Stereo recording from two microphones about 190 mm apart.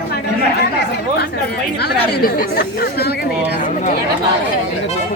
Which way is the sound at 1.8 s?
50° left (ahead or behind).